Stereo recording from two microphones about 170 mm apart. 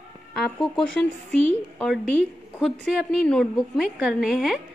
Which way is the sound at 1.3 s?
40° right (ahead or behind).